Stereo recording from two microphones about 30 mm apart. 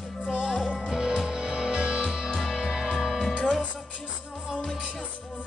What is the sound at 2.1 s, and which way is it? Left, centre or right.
Music, right.